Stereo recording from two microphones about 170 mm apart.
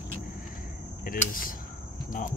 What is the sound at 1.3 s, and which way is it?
Speech, 55° left (ahead or behind).